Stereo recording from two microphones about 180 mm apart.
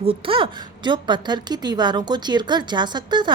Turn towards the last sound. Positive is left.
turn(degrees=-25)  # may be behind; listen again after turning